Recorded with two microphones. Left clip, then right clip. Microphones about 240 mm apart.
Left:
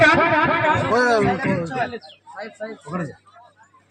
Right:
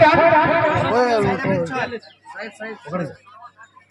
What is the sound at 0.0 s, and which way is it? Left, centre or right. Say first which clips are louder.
Music: right 2 dB; left.